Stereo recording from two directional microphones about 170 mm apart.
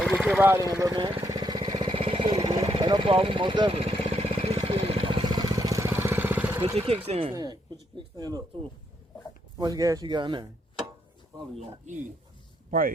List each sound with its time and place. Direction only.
0.0 s vehicle: centre (ahead or behind)
0.3 s speech: 15° right (ahead or behind)
0.7 s a sound: 20° right (ahead or behind)
2.6 s vehicle: 30° right (ahead or behind); by 6.6 s 10° right (ahead or behind)
6.7 s speech: 35° right (ahead or behind)
7.3 s a sound: 25° right (ahead or behind)
9.6 s speech: 20° right (ahead or behind)